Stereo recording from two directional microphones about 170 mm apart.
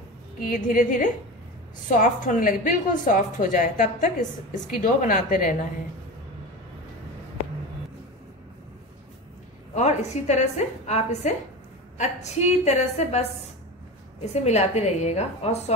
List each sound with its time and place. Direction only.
0.4 s a woman's voice: 50° left (ahead or behind)
9.8 s a woman's voice: 40° left (ahead or behind)
14.2 s a woman's voice: 40° left (ahead or behind)